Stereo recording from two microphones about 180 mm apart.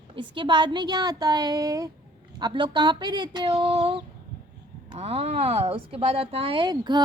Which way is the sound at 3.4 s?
35° right (ahead or behind).